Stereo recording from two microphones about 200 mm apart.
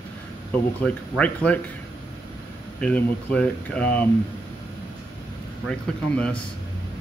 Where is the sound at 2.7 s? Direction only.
5° left (ahead or behind).